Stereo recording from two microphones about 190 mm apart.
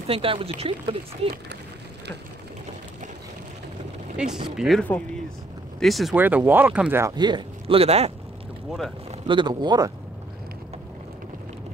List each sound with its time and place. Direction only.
0.0 s speech: 30° right (ahead or behind)
4.2 s speech: 5° right (ahead or behind)
6.1 s speech: 10° right (ahead or behind); by 8.1 s 30° right (ahead or behind)
9.3 s speech: 25° right (ahead or behind)